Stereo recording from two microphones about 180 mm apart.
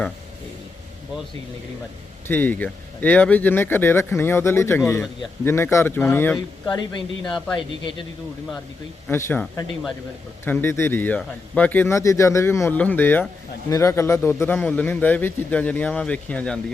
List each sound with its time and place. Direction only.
2.2 s a man's voice: 10° left (ahead or behind)
6.7 s speech: 25° left (ahead or behind)
7.3 s speech: 5° left (ahead or behind)
9.0 s a man's voice: 10° left (ahead or behind)